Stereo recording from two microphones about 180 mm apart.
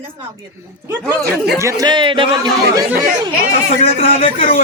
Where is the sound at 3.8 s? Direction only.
35° left (ahead or behind).